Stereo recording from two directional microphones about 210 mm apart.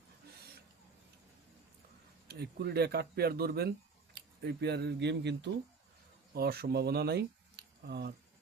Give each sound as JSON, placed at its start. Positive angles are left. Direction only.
{"t": 2.2, "sound": "speech", "side_deg": -50}